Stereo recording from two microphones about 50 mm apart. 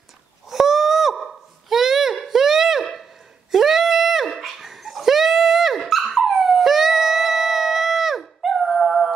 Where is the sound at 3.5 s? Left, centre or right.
Centre.